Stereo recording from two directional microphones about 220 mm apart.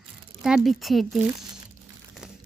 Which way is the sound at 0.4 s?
Centre (ahead or behind).